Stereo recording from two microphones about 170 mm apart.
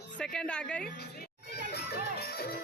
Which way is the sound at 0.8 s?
70° left (ahead or behind).